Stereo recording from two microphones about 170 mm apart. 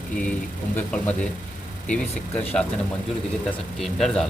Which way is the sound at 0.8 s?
10° left (ahead or behind).